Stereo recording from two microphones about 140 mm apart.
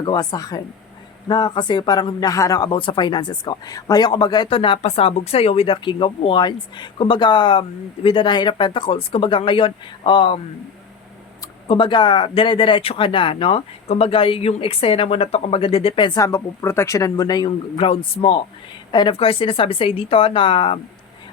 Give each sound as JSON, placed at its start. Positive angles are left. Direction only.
{"t": 0.0, "sound": "speech", "side_deg": 30}
{"t": 11.7, "sound": "speech", "side_deg": 35}
{"t": 16.2, "sound": "speech", "side_deg": 20}
{"t": 17.7, "sound": "speech", "side_deg": 40}